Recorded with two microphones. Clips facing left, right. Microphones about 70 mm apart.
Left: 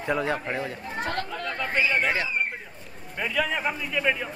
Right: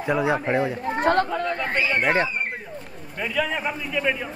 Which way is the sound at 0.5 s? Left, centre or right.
Right.